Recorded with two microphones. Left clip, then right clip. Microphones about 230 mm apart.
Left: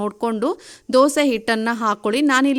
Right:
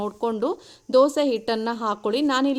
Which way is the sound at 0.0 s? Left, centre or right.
Left.